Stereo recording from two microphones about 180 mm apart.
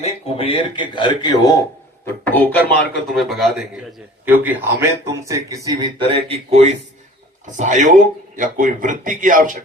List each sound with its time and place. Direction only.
0.0 s a man's voice: 35° left (ahead or behind)
2.0 s a man's voice: 10° left (ahead or behind); by 5.9 s 20° right (ahead or behind)
6.1 s speech: 35° right (ahead or behind)